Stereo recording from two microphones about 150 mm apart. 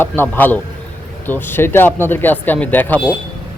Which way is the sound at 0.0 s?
15° left (ahead or behind).